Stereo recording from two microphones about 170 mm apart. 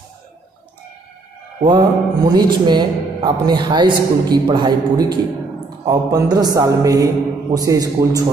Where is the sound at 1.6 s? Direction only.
25° right (ahead or behind).